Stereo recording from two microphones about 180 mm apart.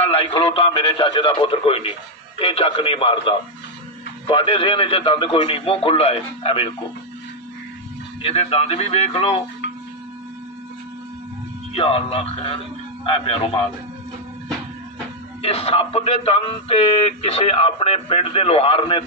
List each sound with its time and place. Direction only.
0.0 s speech: 35° left (ahead or behind)
8.2 s speech: 35° left (ahead or behind)
11.7 s a man's voice: 30° left (ahead or behind)
15.4 s speech: 35° left (ahead or behind)